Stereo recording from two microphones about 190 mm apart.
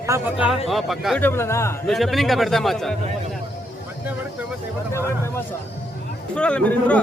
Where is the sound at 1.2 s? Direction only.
15° left (ahead or behind).